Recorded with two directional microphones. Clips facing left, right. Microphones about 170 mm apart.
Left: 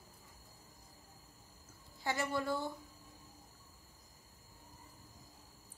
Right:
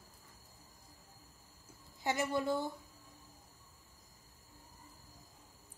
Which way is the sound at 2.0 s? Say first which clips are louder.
Right 2 dB; 20° right (ahead or behind).